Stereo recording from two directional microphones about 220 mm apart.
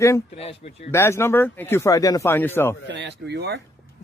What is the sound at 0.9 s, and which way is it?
Speech, 10° left (ahead or behind).